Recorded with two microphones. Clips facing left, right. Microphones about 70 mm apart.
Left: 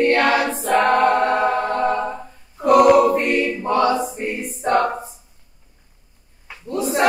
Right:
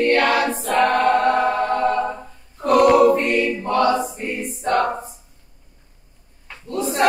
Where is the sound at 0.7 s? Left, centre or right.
Centre.